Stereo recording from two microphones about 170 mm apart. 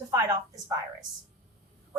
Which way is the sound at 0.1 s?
20° right (ahead or behind).